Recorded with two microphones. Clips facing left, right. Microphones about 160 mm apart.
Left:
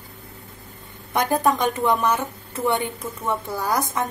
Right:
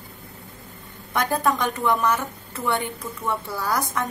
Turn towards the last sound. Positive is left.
turn(degrees=20)  # may be behind; listen again after turning